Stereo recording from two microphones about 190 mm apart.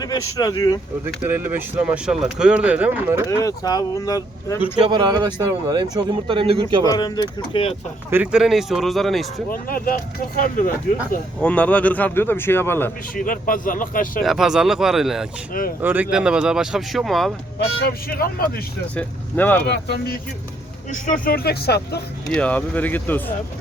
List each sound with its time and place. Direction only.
0.3 s speech: 20° left (ahead or behind)
1.2 s speech: 10° right (ahead or behind)
3.2 s speech: 15° left (ahead or behind)
4.9 s speech: 25° right (ahead or behind)
6.8 s speech: 20° left (ahead or behind)
8.1 s speech: 5° right (ahead or behind)
9.5 s speech: 50° left (ahead or behind)
11.3 s speech: 5° left (ahead or behind)
13.1 s speech: 45° left (ahead or behind)
14.2 s speech: centre (ahead or behind)
17.8 s speech: 55° left (ahead or behind)
18.9 s speech: 10° left (ahead or behind)
20.9 s speech: 50° left (ahead or behind)
22.3 s speech: 5° left (ahead or behind)